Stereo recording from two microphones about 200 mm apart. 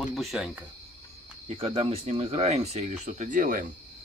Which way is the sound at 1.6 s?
30° right (ahead or behind).